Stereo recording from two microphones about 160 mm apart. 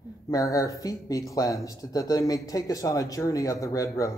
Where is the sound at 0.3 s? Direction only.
20° left (ahead or behind).